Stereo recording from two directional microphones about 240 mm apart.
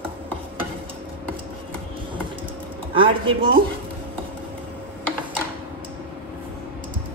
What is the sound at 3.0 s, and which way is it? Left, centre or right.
Speech, right.